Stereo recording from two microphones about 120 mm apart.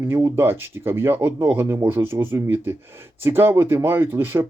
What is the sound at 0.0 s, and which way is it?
Speech, 20° right (ahead or behind).